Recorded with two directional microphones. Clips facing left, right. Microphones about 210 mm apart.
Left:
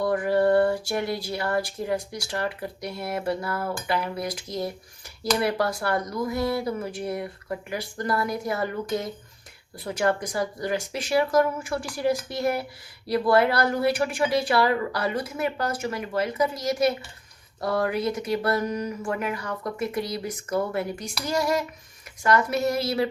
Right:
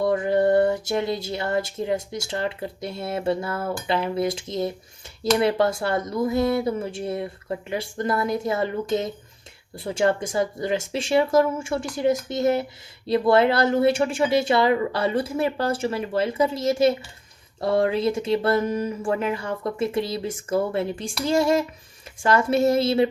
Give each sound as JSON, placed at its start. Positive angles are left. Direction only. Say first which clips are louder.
{"t": 0.0, "sound": "speech", "louder": "right 2 dB", "side_deg": -25}